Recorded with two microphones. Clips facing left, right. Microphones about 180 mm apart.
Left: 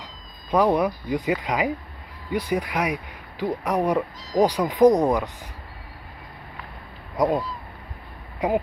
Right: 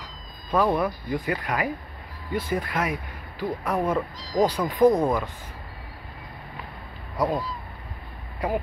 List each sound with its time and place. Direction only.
0.0 s speech: 15° left (ahead or behind)
7.2 s speech: 20° left (ahead or behind)
8.4 s speech: 20° left (ahead or behind)